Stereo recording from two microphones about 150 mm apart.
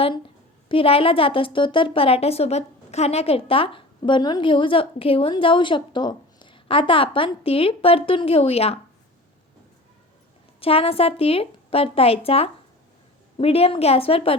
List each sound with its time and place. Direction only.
0.7 s a woman's voice: 40° left (ahead or behind)
10.6 s a woman's voice: 40° left (ahead or behind)